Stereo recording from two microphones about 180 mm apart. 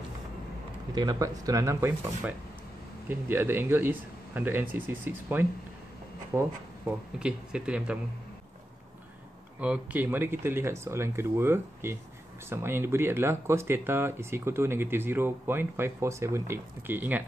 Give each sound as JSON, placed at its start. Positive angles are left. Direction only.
{"t": 0.9, "sound": "speech", "side_deg": -20}
{"t": 9.6, "sound": "speech", "side_deg": -10}